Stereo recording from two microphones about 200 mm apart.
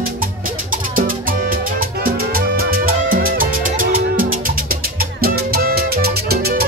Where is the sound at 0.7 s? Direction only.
45° right (ahead or behind).